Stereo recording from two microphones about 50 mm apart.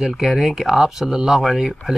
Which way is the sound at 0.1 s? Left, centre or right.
Centre.